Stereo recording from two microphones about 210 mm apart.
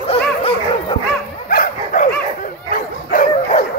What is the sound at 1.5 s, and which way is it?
Dog, 40° left (ahead or behind).